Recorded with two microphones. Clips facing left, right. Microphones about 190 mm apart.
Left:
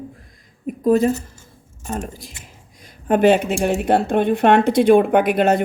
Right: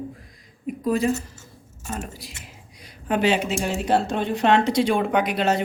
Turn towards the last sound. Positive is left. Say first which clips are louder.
# left 6 dB
turn(degrees=55)  # may be behind; listen again after turning